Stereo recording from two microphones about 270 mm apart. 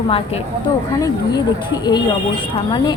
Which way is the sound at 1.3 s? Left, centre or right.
Centre.